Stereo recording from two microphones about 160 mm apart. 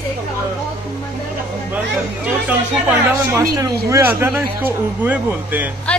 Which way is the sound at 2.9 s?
20° right (ahead or behind).